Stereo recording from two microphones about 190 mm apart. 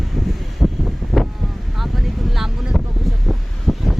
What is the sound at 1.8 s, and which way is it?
Vehicle, centre (ahead or behind).